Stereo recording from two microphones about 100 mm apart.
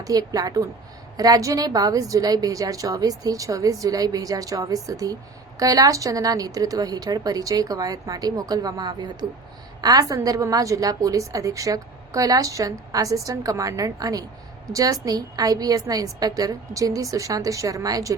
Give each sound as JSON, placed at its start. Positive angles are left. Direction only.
{"t": 0.0, "sound": "a woman's voice", "side_deg": -35}